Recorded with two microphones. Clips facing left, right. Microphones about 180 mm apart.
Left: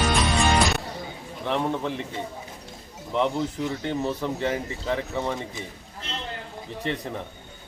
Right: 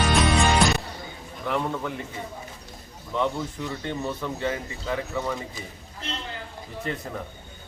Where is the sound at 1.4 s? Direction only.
25° left (ahead or behind).